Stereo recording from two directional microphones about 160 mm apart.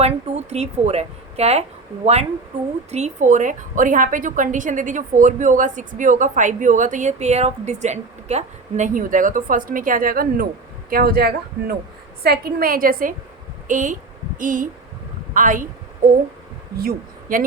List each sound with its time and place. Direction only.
0.0 s speech: 40° right (ahead or behind)
2.9 s a woman's voice: 45° right (ahead or behind); by 17.4 s 65° right (ahead or behind)